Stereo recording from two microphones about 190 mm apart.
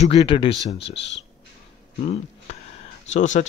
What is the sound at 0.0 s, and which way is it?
Speech, 30° left (ahead or behind).